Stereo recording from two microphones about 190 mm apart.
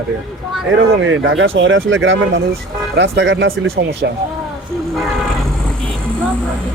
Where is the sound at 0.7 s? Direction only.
85° right.